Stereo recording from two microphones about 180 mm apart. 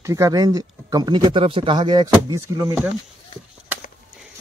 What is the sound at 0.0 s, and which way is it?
Speech, 20° right (ahead or behind).